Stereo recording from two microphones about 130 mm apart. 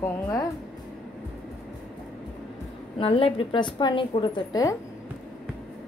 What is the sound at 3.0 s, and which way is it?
A woman's voice, 45° left (ahead or behind).